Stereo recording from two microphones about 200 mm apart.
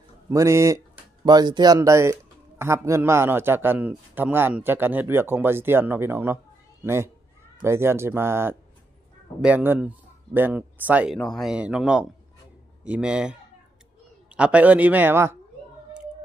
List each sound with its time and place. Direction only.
0.3 s a man's voice: 15° right (ahead or behind)
11.1 s a man's voice: 5° left (ahead or behind)